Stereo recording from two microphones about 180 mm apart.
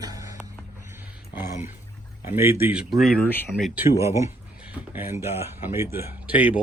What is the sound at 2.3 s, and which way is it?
Speech, 15° right (ahead or behind).